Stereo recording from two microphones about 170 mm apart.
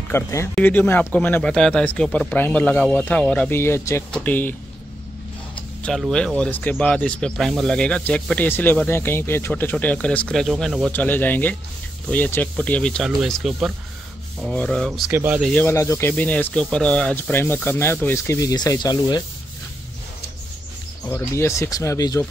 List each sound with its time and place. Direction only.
0.1 s speech: 15° left (ahead or behind)
5.8 s speech: 5° left (ahead or behind)
10.9 s speech: 10° left (ahead or behind); by 15.5 s 10° right (ahead or behind)
15.5 s speech: 15° left (ahead or behind)
21.1 s speech: 15° left (ahead or behind)